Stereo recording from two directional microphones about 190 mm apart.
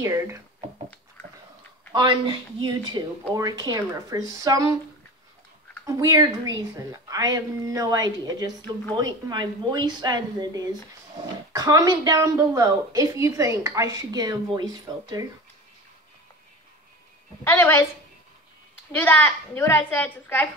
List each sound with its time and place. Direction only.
0.0 s speech: 15° right (ahead or behind)
1.9 s a woman's voice: 25° right (ahead or behind)
5.9 s a woman's voice: 20° right (ahead or behind)
17.4 s a woman's voice: 10° left (ahead or behind)
18.9 s a woman's voice: 10° left (ahead or behind)